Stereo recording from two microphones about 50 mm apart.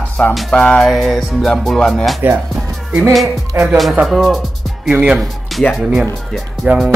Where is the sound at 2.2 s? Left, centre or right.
Right.